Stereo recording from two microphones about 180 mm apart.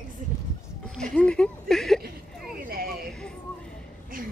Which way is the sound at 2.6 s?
60° right (ahead or behind).